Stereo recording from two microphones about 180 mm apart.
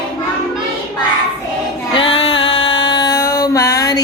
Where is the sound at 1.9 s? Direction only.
30° left (ahead or behind).